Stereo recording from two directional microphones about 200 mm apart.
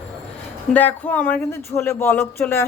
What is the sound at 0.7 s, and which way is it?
Speech, 10° left (ahead or behind).